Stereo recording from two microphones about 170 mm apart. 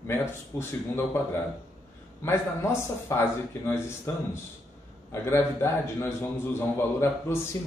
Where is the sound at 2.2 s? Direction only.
15° left (ahead or behind).